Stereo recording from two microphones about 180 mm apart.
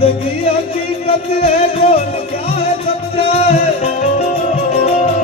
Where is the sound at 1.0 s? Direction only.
30° left (ahead or behind).